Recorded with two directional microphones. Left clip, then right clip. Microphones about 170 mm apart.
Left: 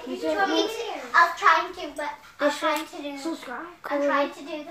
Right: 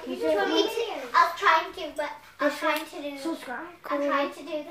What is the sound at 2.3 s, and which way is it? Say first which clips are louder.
Speech: left 2 dB; 15° left (ahead or behind).